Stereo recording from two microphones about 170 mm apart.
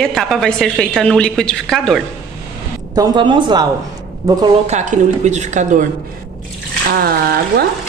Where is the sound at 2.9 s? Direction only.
25° right (ahead or behind).